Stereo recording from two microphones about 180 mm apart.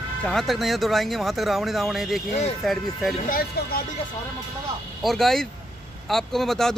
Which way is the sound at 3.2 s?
55° left (ahead or behind).